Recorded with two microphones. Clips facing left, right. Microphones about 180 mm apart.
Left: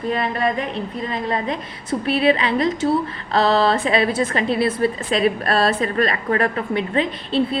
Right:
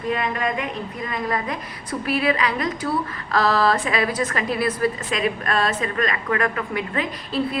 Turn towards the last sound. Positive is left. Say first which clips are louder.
# left 4 dB
turn(degrees=30)  # may be behind; listen again after turning